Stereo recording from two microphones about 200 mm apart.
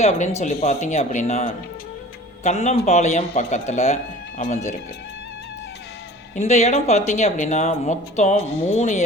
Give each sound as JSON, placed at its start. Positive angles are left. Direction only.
{"t": 0.0, "sound": "speech", "side_deg": 35}
{"t": 6.3, "sound": "speech", "side_deg": 35}